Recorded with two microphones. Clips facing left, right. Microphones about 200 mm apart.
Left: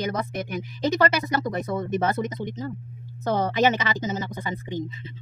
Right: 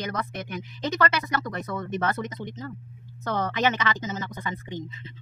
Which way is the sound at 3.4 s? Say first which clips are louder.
Left 3 dB; 30° left (ahead or behind).